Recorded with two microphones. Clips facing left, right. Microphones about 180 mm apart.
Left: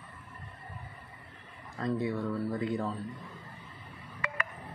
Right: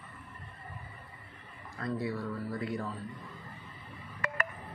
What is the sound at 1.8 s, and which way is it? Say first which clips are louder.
Speech: left 3 dB; 20° left (ahead or behind).